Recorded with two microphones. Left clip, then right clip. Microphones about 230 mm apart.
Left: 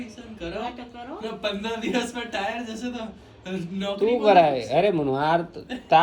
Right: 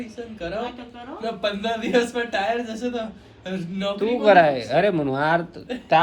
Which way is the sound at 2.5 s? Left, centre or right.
Centre.